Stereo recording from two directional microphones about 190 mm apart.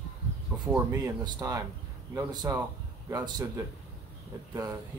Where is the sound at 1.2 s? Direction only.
20° right (ahead or behind).